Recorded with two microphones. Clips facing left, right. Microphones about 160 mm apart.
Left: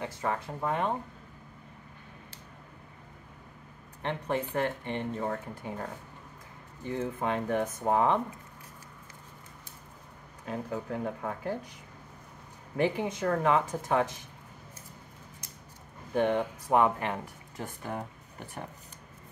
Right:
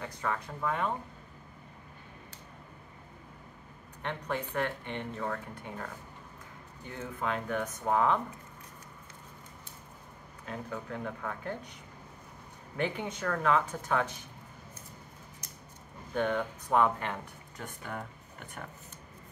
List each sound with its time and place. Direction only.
0.0 s speech: 25° left (ahead or behind)
4.0 s speech: 30° left (ahead or behind)
6.9 s speech: 25° left (ahead or behind)
10.4 s speech: 25° left (ahead or behind)
12.7 s speech: 30° left (ahead or behind)
16.1 s speech: 25° left (ahead or behind)